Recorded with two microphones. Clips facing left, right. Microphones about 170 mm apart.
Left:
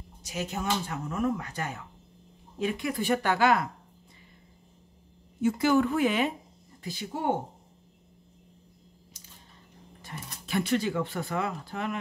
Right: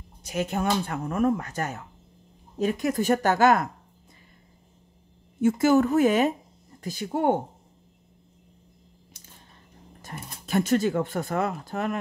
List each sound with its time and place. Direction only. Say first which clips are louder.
0.2 s speech: right 6 dB; 55° right (ahead or behind)
5.4 s speech: right 4 dB; 45° right (ahead or behind)
10.0 s speech: right 3 dB; 45° right (ahead or behind)